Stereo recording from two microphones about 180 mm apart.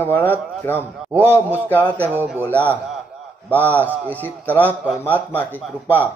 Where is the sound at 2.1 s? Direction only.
10° right (ahead or behind).